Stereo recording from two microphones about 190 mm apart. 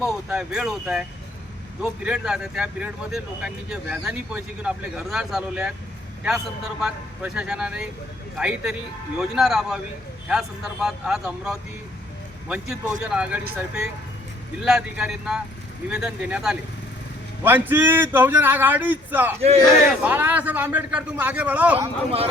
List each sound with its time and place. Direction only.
0.0 s speech: 5° right (ahead or behind)
6.8 s speech: 5° right (ahead or behind)
14.6 s speech: 5° right (ahead or behind)
21.8 s speech: 30° right (ahead or behind)